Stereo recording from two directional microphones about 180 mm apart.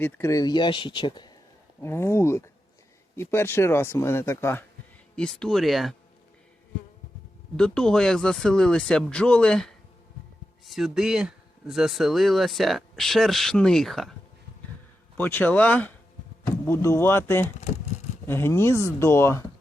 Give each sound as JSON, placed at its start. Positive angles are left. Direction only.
{"t": 0.0, "sound": "speech", "side_deg": 15}
{"t": 1.8, "sound": "speech", "side_deg": 15}
{"t": 7.5, "sound": "speech", "side_deg": 5}
{"t": 15.2, "sound": "speech", "side_deg": 10}